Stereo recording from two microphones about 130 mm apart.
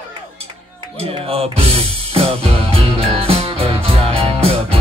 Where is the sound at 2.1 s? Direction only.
45° right (ahead or behind).